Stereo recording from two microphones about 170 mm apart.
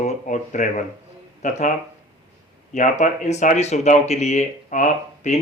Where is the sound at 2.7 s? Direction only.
45° left (ahead or behind).